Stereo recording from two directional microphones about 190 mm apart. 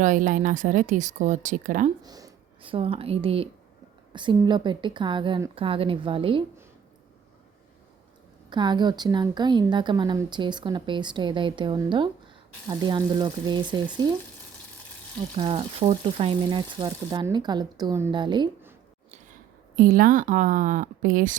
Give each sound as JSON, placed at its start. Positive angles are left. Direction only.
{"t": 0.0, "sound": "speech", "side_deg": -45}
{"t": 2.0, "sound": "a woman's voice", "side_deg": -20}
{"t": 8.4, "sound": "a woman's voice", "side_deg": -25}
{"t": 15.4, "sound": "a woman's voice", "side_deg": -25}
{"t": 19.7, "sound": "speech", "side_deg": -50}